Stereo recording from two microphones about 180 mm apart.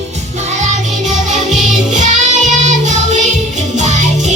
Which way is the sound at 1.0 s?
40° right (ahead or behind).